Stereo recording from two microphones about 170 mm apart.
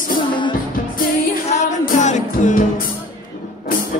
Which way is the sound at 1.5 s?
45° left (ahead or behind).